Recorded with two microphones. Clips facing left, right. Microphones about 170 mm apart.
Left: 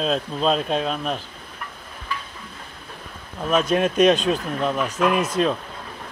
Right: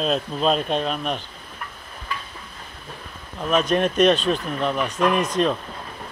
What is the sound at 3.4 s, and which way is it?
Speech, 5° left (ahead or behind).